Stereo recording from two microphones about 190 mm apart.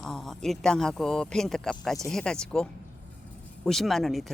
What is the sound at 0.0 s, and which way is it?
Speech, centre (ahead or behind).